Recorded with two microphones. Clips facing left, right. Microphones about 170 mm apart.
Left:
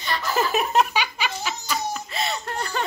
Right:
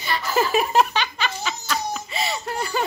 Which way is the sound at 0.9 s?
10° left (ahead or behind).